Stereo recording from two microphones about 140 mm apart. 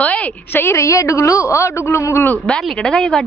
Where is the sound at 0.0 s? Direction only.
10° left (ahead or behind).